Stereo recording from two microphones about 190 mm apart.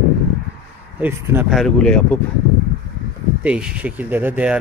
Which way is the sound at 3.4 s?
5° right (ahead or behind).